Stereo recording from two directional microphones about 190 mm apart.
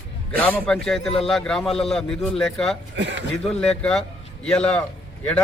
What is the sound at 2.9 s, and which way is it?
Speech, 65° right (ahead or behind).